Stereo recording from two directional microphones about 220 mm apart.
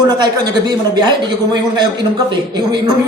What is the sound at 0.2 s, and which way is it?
Speech, 20° right (ahead or behind).